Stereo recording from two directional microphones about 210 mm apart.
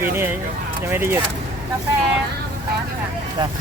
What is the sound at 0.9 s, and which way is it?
Speech, 10° right (ahead or behind).